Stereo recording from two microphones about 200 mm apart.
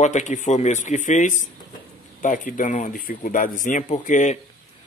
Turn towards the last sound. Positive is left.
turn(degrees=40)  # may be behind; listen again after turning